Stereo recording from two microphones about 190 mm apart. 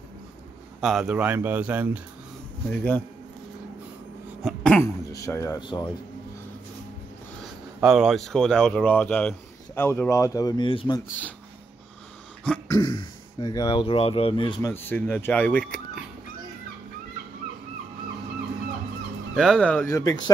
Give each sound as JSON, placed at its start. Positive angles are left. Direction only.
{"t": 0.7, "sound": "speech", "side_deg": 0}
{"t": 2.7, "sound": "speech", "side_deg": 10}
{"t": 4.4, "sound": "throat clearing", "side_deg": 5}
{"t": 5.2, "sound": "speech", "side_deg": 15}
{"t": 7.8, "sound": "speech", "side_deg": 0}
{"t": 12.6, "sound": "speech", "side_deg": 20}
{"t": 14.6, "sound": "speech", "side_deg": 10}
{"t": 19.3, "sound": "speech", "side_deg": 5}